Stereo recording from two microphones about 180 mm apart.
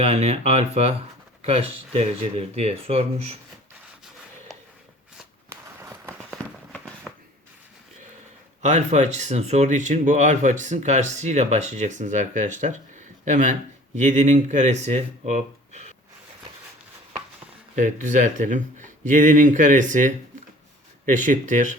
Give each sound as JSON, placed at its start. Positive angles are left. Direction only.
{"t": 0.0, "sound": "speech", "side_deg": -35}
{"t": 5.5, "sound": "a sound", "side_deg": -15}
{"t": 8.6, "sound": "speech", "side_deg": -40}
{"t": 17.7, "sound": "speech", "side_deg": -45}